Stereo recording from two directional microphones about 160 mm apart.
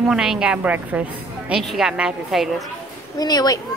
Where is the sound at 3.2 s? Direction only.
25° left (ahead or behind).